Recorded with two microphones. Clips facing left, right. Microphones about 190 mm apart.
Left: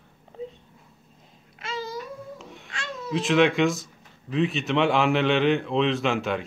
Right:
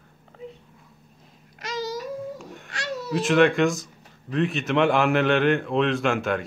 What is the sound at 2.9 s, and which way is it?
Baby cry, 80° right.